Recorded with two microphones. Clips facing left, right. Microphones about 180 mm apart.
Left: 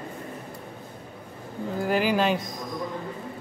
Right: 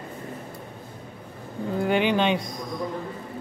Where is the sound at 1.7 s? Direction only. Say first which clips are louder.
Right 1 dB; centre (ahead or behind).